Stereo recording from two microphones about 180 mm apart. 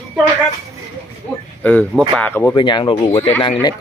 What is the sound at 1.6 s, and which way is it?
Speech, 10° left (ahead or behind).